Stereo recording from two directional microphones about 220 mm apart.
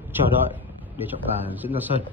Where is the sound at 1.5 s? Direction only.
10° right (ahead or behind).